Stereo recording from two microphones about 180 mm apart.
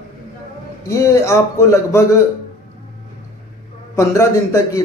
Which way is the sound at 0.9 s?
15° left (ahead or behind).